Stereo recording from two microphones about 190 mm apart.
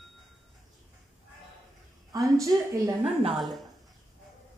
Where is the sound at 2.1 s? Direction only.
15° right (ahead or behind).